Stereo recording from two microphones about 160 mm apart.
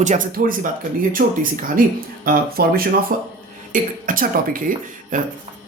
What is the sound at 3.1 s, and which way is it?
Speech, 55° right (ahead or behind).